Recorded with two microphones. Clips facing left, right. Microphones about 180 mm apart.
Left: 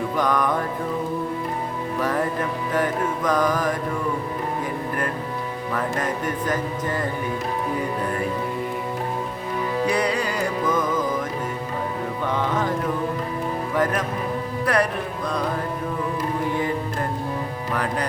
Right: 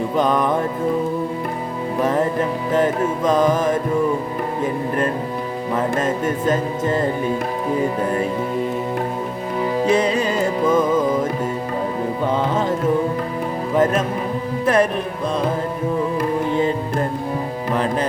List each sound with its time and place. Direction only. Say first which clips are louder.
0.2 s music: right 4 dB; 25° right (ahead or behind)
2.0 s music: right 5 dB; 25° right (ahead or behind)
5.7 s music: right 5 dB; 25° right (ahead or behind)
9.8 s music: right 5 dB; 25° right (ahead or behind)
13.7 s music: right 6 dB; 25° right (ahead or behind)